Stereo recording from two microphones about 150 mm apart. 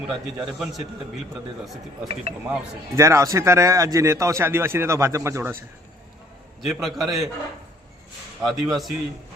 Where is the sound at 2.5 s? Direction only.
20° right (ahead or behind).